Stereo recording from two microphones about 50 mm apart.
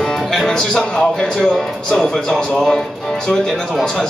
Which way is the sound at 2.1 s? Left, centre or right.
Centre.